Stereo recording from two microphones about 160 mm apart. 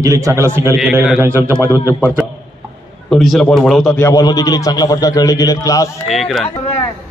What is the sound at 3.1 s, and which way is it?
Speech, centre (ahead or behind).